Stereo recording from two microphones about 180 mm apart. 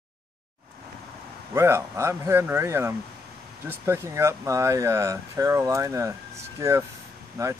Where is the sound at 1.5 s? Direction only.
15° right (ahead or behind).